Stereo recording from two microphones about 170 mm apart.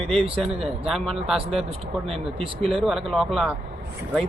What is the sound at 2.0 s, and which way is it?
Speech, 35° right (ahead or behind).